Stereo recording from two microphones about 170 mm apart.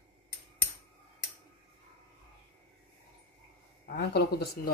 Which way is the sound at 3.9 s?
70° left (ahead or behind).